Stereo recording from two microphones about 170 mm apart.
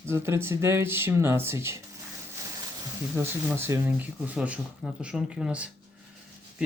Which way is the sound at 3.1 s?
15° right (ahead or behind).